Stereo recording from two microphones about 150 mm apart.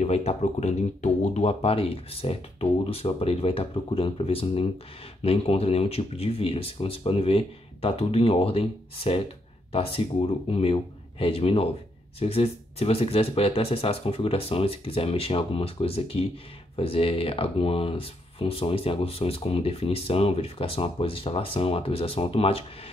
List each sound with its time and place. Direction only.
0.0 s speech: 45° left (ahead or behind)